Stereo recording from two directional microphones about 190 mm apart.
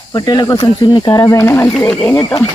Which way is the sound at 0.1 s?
20° left (ahead or behind).